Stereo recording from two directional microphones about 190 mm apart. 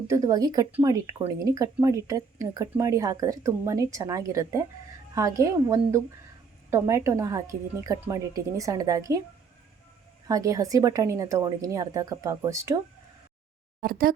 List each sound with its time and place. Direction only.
0.1 s speech: 20° right (ahead or behind)
10.2 s speech: 15° right (ahead or behind)
13.8 s speech: 50° right (ahead or behind)